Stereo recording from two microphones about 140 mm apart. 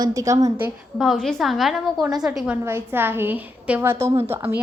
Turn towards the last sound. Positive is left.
turn(degrees=-15)  # may be behind; listen again after turning